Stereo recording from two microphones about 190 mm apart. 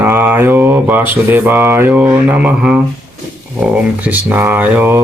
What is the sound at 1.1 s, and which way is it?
Speech, 10° right (ahead or behind).